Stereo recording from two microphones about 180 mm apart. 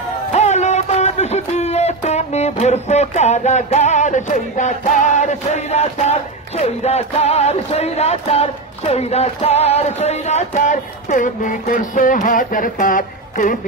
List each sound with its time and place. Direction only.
0.3 s music: 40° left (ahead or behind)